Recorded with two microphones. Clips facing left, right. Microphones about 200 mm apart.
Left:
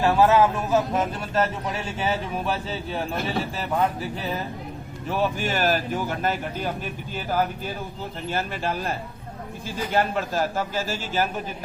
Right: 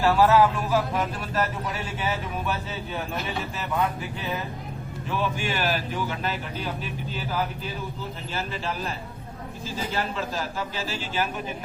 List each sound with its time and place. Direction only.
0.0 s speech: 20° left (ahead or behind); by 6.7 s 50° left (ahead or behind)
8.3 s speech: 50° left (ahead or behind)